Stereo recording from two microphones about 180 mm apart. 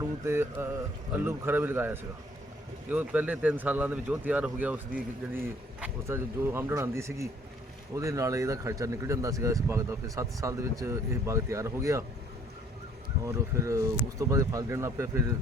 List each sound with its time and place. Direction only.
0.0 s mantra: 15° right (ahead or behind)
1.2 s speech: 10° right (ahead or behind)
13.2 s speech: 15° right (ahead or behind)